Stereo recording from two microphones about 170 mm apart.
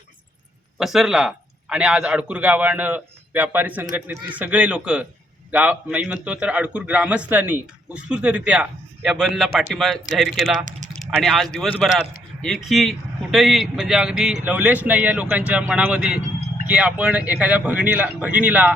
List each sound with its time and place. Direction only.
0.8 s speech: 5° right (ahead or behind)
10.7 s typing: 45° right (ahead or behind)
11.0 s speech: centre (ahead or behind)